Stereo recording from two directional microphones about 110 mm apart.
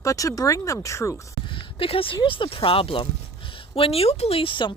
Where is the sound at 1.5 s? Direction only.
55° left (ahead or behind).